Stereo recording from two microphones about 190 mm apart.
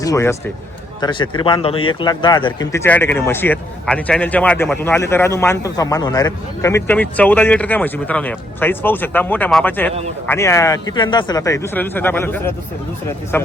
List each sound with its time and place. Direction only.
0.0 s speech: 15° left (ahead or behind)